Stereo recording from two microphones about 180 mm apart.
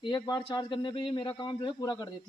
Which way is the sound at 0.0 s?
25° left (ahead or behind).